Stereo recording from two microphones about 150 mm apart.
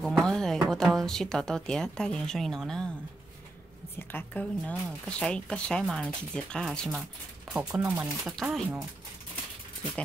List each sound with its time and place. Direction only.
0.0 s speech: 5° left (ahead or behind)
4.1 s a woman's voice: 10° left (ahead or behind); by 7.8 s 5° right (ahead or behind)
7.8 s speech: 20° right (ahead or behind)
8.3 s speech: centre (ahead or behind)